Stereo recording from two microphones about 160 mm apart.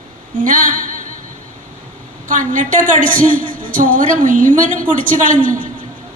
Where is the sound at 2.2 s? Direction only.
55° right (ahead or behind).